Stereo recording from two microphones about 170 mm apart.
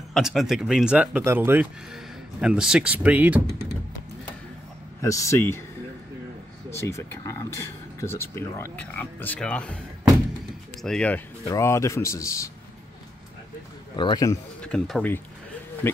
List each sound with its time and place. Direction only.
0.1 s speech: centre (ahead or behind)
5.0 s speech: 20° left (ahead or behind)
6.7 s speech: 15° left (ahead or behind)
11.4 s speech: 15° left (ahead or behind)
13.9 s a man's voice: 25° left (ahead or behind)
14.6 s speech: 5° left (ahead or behind)